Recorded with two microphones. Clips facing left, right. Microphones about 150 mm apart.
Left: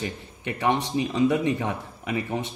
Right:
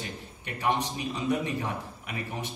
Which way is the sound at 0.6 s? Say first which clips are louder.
Left 5 dB; 90° left.